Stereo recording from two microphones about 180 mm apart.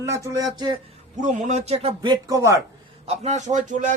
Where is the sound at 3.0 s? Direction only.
40° right (ahead or behind).